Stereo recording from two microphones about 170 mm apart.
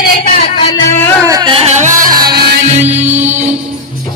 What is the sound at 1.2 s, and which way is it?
Music, 20° right (ahead or behind).